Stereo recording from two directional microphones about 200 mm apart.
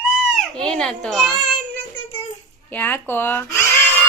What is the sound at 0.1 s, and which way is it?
Goat, centre (ahead or behind).